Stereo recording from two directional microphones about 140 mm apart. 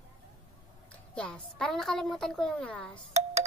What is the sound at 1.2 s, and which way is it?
A woman's voice, 5° left (ahead or behind).